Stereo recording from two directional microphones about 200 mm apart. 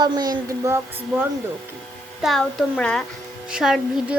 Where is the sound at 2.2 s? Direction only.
Centre (ahead or behind).